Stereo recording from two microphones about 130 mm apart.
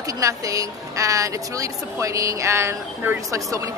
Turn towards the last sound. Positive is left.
turn(degrees=-25)  # may be behind; listen again after turning